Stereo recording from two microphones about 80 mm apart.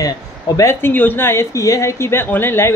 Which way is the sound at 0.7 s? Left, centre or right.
Left.